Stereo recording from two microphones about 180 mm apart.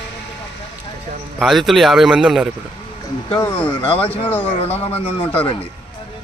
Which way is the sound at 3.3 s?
10° left (ahead or behind).